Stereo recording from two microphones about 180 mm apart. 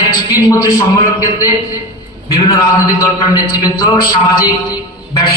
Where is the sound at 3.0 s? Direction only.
20° left (ahead or behind).